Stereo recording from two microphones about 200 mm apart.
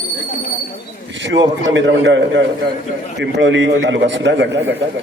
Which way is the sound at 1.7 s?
65° right (ahead or behind).